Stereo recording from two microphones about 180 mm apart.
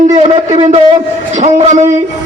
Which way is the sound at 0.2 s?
35° right (ahead or behind).